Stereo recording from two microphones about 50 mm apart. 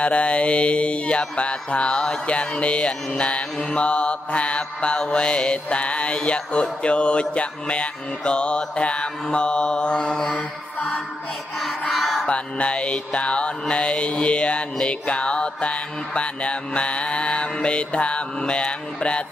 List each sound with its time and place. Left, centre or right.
0.0 s mantra: left
11.9 s music: centre
12.3 s mantra: left